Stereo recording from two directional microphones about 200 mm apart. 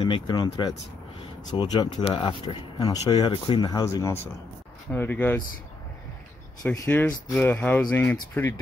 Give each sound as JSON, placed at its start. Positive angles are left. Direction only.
{"t": 0.0, "sound": "speech", "side_deg": 25}
{"t": 6.6, "sound": "speech", "side_deg": 10}